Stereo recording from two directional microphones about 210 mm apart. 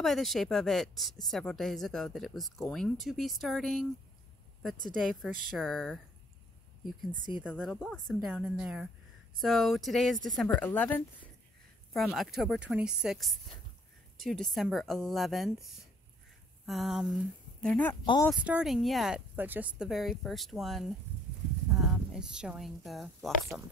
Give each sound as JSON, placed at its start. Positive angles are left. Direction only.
{"t": 0.0, "sound": "speech", "side_deg": 0}
{"t": 4.9, "sound": "speech", "side_deg": 0}
{"t": 7.5, "sound": "speech", "side_deg": 0}
{"t": 18.0, "sound": "speech", "side_deg": 20}
{"t": 18.3, "sound": "speech", "side_deg": -5}